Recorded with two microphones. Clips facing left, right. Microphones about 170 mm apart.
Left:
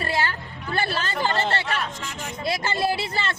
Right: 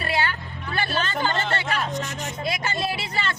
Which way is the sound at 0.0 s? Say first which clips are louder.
Even; 30° left (ahead or behind).